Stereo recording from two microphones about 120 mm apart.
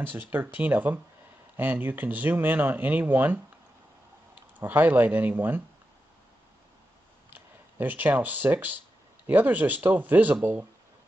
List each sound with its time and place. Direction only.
0.0 s speech: 15° right (ahead or behind)
4.4 s speech: 15° right (ahead or behind)
7.2 s speech: 15° right (ahead or behind)